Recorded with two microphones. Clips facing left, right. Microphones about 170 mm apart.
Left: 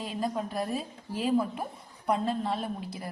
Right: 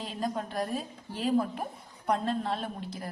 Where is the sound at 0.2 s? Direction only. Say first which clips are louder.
Even; 5° left (ahead or behind).